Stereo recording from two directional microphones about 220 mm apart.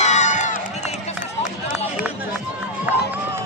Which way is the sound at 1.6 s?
40° left (ahead or behind).